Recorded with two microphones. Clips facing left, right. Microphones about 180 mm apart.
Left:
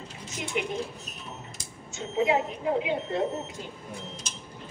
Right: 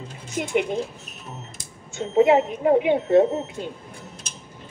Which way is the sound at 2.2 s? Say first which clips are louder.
Right 5 dB; 60° right (ahead or behind).